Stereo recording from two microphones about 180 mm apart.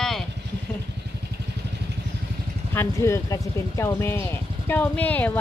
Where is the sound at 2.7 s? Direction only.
15° left (ahead or behind).